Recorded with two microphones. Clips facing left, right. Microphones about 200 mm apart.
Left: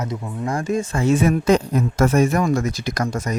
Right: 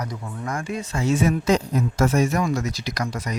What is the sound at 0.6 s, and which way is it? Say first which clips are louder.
Speech: left 6 dB; 45° left (ahead or behind).